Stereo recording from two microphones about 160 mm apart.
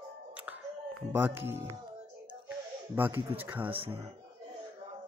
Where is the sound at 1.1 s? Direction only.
15° right (ahead or behind).